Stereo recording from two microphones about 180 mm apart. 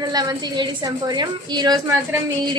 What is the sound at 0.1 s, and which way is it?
A woman's voice, 20° right (ahead or behind).